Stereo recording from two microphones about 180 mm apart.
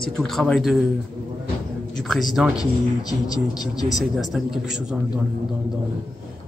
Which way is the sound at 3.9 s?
Centre (ahead or behind).